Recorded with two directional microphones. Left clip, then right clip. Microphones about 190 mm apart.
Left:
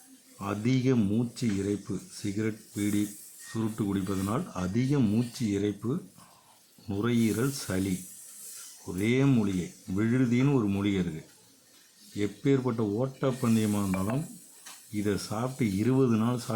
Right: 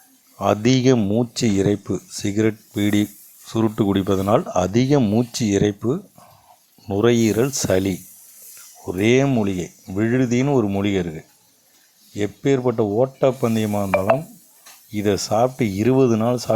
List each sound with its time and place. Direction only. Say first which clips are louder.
0.3 s speech: right 13 dB; 40° right (ahead or behind)
10.4 s speech: right 8 dB; 25° right (ahead or behind)
12.1 s speech: right 8 dB; 35° right (ahead or behind)
14.9 s speech: right 13 dB; 40° right (ahead or behind)